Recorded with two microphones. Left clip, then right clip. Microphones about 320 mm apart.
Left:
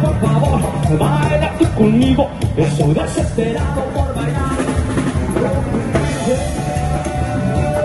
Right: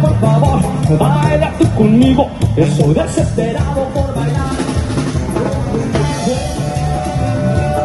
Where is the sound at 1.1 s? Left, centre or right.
Right.